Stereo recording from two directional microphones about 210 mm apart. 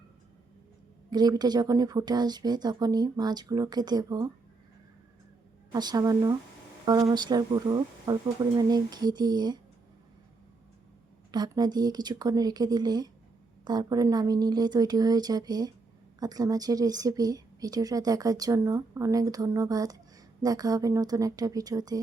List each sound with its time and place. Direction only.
1.1 s speech: 20° right (ahead or behind)
5.7 s speech: 20° right (ahead or behind)
11.3 s speech: 20° right (ahead or behind)